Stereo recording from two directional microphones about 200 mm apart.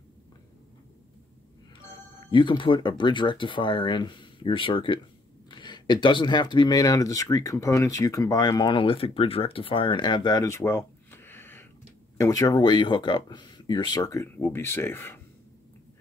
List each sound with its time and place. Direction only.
2.1 s speech: 25° left (ahead or behind)